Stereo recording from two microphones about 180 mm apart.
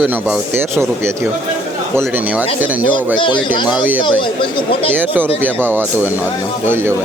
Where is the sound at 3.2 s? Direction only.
25° left (ahead or behind).